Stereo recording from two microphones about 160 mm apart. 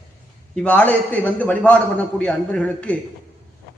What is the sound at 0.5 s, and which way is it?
A man's voice, 10° left (ahead or behind).